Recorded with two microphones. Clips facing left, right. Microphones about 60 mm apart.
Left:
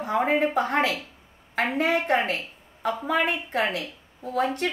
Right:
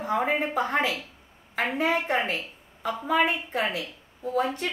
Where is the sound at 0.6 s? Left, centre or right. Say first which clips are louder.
Left 2 dB; left.